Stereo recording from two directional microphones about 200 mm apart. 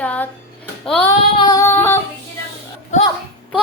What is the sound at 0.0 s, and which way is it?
Music, 5° left (ahead or behind).